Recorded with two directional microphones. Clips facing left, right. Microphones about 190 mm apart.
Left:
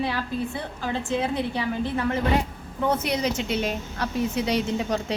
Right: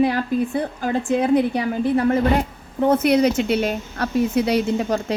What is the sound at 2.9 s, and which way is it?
A woman's voice, 60° right (ahead or behind).